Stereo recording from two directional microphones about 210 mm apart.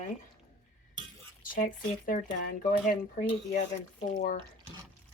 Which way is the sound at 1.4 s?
40° left (ahead or behind).